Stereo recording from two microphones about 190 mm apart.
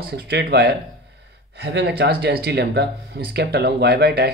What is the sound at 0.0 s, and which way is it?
Speech, 60° right (ahead or behind).